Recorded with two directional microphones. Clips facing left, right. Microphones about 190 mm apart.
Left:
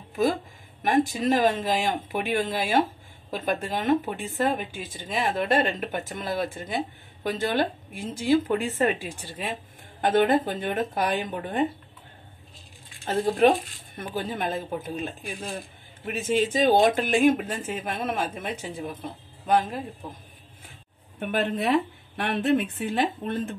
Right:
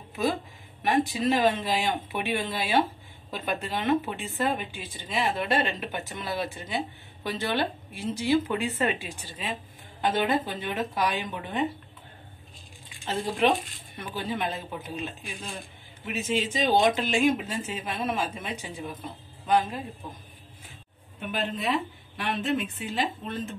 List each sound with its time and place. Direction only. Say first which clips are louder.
0.1 s a woman's voice: left 4 dB; 45° left (ahead or behind)
13.0 s speech: left 5 dB; 50° left (ahead or behind)
21.2 s a woman's voice: left 5 dB; 60° left (ahead or behind)